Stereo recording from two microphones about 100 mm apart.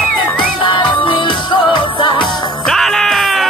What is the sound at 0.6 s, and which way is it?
Music, 55° left (ahead or behind).